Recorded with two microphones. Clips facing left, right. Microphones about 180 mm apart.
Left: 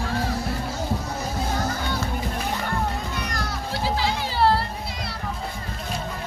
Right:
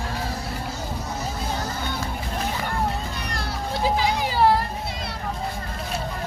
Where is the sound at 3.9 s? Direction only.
15° right (ahead or behind).